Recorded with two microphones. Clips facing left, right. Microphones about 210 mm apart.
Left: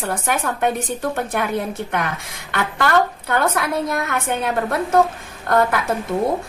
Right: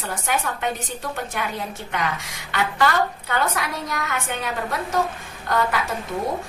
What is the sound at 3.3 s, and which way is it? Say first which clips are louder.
A woman's voice: left 5 dB; 55° left (ahead or behind).